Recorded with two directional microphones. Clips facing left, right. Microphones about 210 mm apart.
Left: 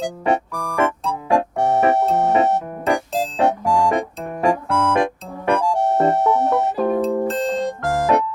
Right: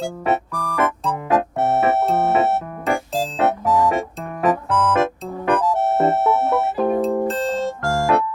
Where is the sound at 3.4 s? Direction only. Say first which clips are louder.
Even; 15° left (ahead or behind).